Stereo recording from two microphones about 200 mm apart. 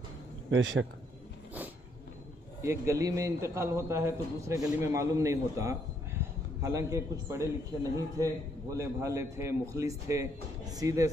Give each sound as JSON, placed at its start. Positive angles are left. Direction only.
{"t": 0.5, "sound": "speech", "side_deg": -70}
{"t": 2.6, "sound": "a man's voice", "side_deg": -15}